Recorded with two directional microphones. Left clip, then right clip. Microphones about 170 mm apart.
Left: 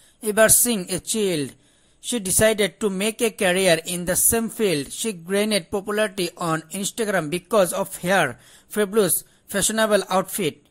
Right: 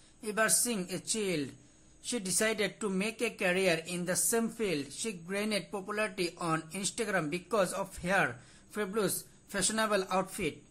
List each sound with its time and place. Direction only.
0.2 s speech: 40° left (ahead or behind)